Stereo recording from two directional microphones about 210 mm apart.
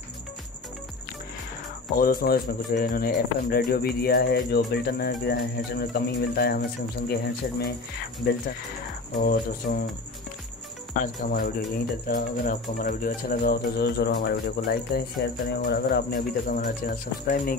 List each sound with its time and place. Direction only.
2.0 s speech: 45° left (ahead or behind)
9.2 s speech: 40° left (ahead or behind)
11.0 s speech: 40° left (ahead or behind)